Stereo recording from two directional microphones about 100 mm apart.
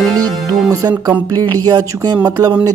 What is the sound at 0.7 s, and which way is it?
Music, 35° right (ahead or behind).